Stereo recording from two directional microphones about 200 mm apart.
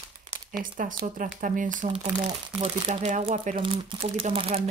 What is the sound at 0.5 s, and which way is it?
Speech, 45° right (ahead or behind).